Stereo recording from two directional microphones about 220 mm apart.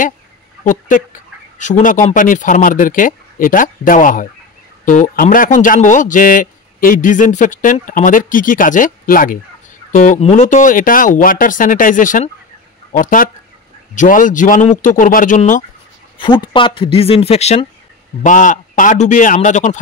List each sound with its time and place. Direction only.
0.7 s a man's voice: 35° left (ahead or behind)
16.2 s a man's voice: 20° left (ahead or behind)